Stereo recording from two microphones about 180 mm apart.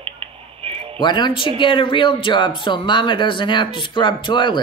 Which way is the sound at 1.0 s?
25° left (ahead or behind).